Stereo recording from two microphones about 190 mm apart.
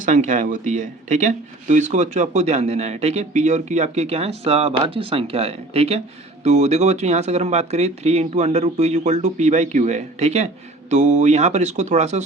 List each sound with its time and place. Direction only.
0.0 s speech: 40° right (ahead or behind)